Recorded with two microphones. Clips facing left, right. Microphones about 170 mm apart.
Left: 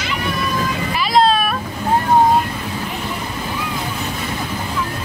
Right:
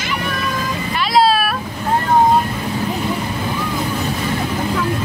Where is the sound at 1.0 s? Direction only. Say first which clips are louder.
Right 1 dB; centre (ahead or behind).